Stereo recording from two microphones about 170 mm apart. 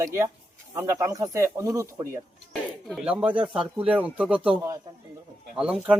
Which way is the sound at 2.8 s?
Centre (ahead or behind).